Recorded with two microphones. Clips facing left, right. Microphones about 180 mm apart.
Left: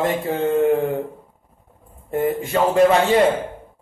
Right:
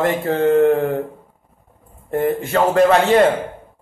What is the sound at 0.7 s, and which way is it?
Speech, 10° left (ahead or behind).